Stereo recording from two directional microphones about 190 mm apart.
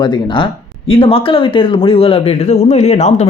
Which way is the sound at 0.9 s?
30° left (ahead or behind).